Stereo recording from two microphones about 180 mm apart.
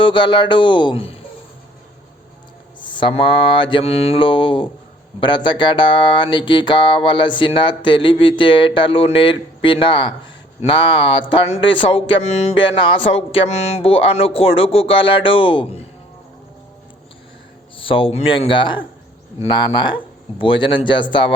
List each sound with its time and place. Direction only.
0.0 s speech: 25° left (ahead or behind)
2.8 s speech: 25° left (ahead or behind)
17.7 s speech: 30° left (ahead or behind)